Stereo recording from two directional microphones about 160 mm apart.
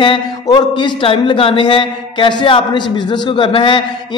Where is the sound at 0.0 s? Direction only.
30° left (ahead or behind).